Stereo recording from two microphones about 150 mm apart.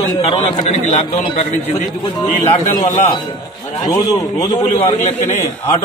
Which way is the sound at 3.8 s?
25° left (ahead or behind).